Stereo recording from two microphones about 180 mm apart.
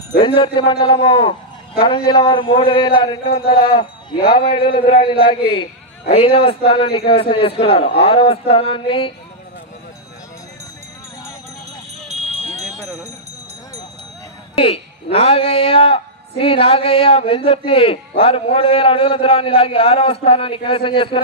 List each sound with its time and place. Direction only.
0.2 s a man's voice: 25° left (ahead or behind)
3.3 s wind chime: 60° left (ahead or behind)
3.6 s a man's voice: 25° left (ahead or behind)
12.1 s clip-clop: 40° right (ahead or behind)
14.5 s speech: 35° left (ahead or behind)